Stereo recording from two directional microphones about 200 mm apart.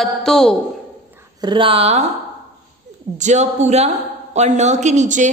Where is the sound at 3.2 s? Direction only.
35° right (ahead or behind).